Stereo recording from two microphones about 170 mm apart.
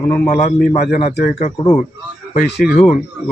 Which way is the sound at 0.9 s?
55° left (ahead or behind).